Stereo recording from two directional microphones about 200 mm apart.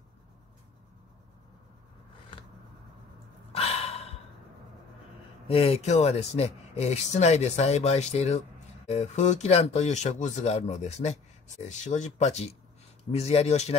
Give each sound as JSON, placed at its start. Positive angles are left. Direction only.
{"t": 3.5, "sound": "sigh", "side_deg": 30}
{"t": 5.5, "sound": "speech", "side_deg": 30}